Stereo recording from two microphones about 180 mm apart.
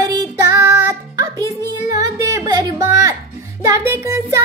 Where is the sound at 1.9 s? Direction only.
20° right (ahead or behind).